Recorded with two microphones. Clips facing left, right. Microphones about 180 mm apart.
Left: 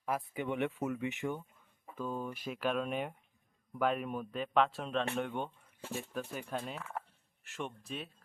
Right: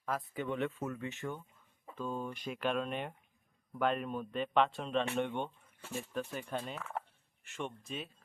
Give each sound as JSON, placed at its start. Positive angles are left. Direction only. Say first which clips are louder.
{"t": 0.0, "sound": "speech", "louder": "left 1 dB", "side_deg": 15}